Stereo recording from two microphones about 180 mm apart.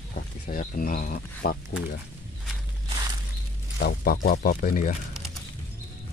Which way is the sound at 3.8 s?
60° left (ahead or behind).